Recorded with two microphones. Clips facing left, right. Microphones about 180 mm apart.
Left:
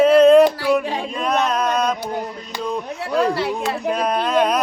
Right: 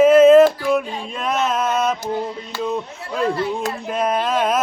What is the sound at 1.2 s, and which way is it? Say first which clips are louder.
Male singing: even; centre (ahead or behind).